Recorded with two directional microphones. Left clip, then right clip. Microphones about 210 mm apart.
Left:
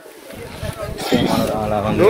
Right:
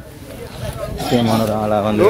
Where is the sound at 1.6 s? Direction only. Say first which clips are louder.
Right 2 dB; 50° right (ahead or behind).